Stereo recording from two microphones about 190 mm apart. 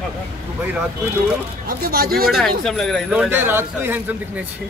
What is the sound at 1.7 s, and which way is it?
Speech, 50° right (ahead or behind).